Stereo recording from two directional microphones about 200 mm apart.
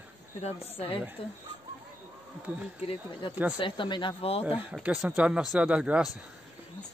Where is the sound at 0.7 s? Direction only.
30° left (ahead or behind).